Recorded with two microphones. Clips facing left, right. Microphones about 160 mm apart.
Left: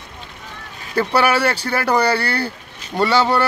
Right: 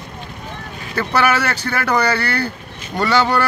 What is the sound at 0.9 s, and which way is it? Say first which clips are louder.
Speech: left 1 dB; 30° left (ahead or behind).